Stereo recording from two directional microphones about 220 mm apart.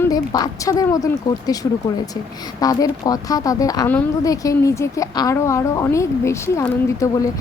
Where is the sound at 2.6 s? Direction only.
15° left (ahead or behind).